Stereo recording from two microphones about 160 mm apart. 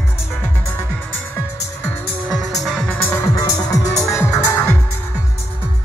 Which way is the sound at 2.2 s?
Centre (ahead or behind).